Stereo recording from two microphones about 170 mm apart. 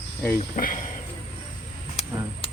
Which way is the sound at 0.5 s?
55° left (ahead or behind).